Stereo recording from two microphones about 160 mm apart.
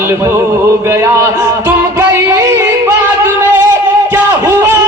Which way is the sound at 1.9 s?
15° right (ahead or behind).